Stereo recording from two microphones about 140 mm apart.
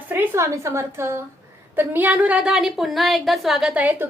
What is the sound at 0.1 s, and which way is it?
A woman's voice, 20° right (ahead or behind).